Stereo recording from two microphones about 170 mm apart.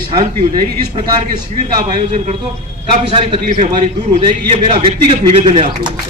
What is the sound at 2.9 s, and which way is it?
A man's voice, 30° right (ahead or behind).